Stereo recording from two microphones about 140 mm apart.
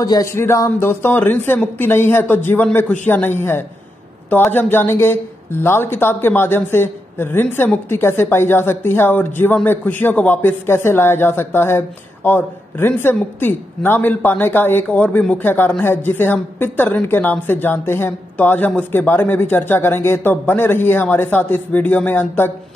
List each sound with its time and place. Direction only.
0.0 s speech: 25° left (ahead or behind)